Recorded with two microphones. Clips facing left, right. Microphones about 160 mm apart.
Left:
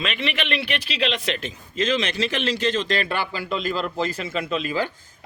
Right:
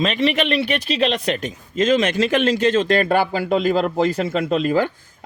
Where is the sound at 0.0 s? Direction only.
40° right (ahead or behind).